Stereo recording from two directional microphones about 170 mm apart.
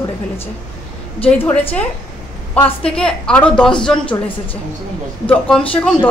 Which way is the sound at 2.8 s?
5° left (ahead or behind).